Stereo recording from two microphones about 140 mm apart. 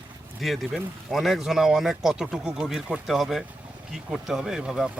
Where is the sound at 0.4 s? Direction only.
Centre (ahead or behind).